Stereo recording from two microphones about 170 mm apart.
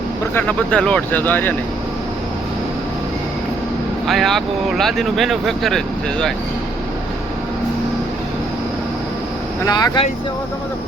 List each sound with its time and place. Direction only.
0.3 s speech: 10° left (ahead or behind)
4.0 s speech: centre (ahead or behind)
9.6 s speech: 25° left (ahead or behind)